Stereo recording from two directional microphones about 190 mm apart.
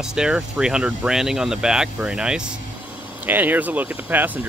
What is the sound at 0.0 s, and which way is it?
Speech, 5° right (ahead or behind).